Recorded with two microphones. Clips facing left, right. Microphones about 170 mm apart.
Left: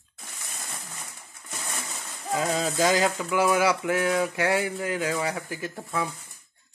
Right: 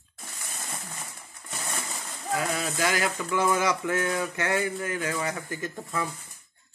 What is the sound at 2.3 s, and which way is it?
Speech, 20° left (ahead or behind).